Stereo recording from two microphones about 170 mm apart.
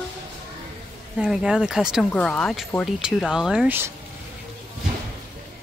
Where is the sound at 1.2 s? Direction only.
5° right (ahead or behind).